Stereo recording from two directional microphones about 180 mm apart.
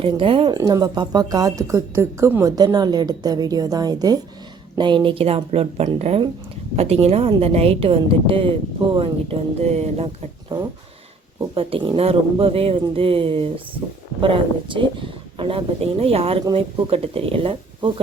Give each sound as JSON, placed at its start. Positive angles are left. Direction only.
{"t": 0.0, "sound": "speech", "side_deg": -30}
{"t": 11.3, "sound": "speech", "side_deg": -30}